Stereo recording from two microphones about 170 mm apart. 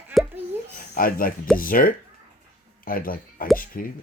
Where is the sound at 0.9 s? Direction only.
60° left (ahead or behind).